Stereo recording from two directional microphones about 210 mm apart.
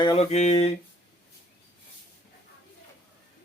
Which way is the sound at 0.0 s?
25° left (ahead or behind).